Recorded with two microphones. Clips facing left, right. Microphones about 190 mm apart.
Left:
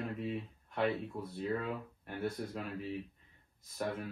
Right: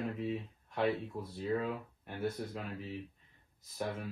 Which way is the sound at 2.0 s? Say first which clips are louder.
Even; centre (ahead or behind).